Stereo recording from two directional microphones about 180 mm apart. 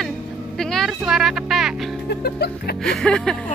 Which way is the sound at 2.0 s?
65° left (ahead or behind).